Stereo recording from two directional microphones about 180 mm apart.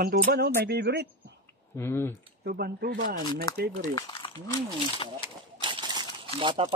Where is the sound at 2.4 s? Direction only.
60° right (ahead or behind).